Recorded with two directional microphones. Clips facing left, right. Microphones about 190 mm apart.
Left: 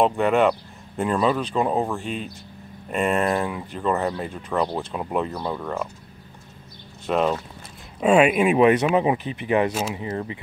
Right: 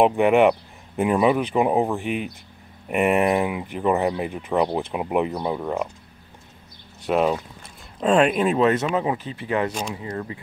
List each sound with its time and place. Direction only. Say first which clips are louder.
0.0 s speech: right 3 dB; 15° right (ahead or behind)
7.1 s speech: right 1 dB; 5° right (ahead or behind)
8.0 s speech: left 1 dB; 10° left (ahead or behind)
9.7 s speech: left 3 dB; 5° left (ahead or behind)
9.9 s speech: left 2 dB; 20° left (ahead or behind)